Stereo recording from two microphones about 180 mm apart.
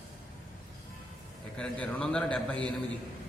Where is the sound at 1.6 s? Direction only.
5° left (ahead or behind).